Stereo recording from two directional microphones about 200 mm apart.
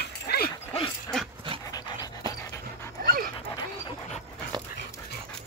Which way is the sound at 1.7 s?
20° left (ahead or behind).